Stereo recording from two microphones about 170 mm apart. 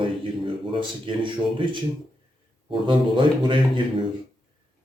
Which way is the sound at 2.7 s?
30° right (ahead or behind).